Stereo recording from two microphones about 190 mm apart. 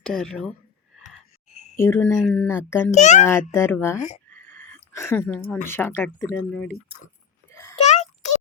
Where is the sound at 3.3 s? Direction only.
15° left (ahead or behind).